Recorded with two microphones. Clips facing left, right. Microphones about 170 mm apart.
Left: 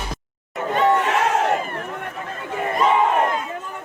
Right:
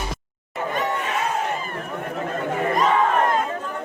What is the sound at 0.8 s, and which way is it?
Chatter, 80° left.